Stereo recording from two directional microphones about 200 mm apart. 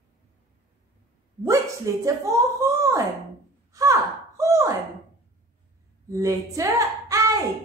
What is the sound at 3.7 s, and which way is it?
Sigh, 15° right (ahead or behind).